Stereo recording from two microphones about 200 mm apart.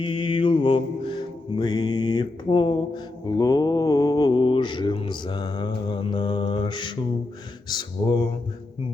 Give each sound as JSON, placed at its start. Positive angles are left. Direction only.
{"t": 0.0, "sound": "mantra", "side_deg": 25}